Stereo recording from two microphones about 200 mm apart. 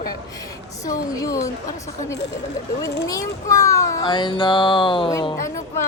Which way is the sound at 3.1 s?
15° left (ahead or behind).